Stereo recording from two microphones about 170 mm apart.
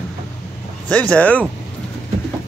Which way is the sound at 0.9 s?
5° left (ahead or behind).